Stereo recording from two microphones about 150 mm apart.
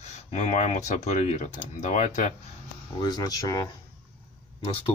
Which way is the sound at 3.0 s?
30° left (ahead or behind).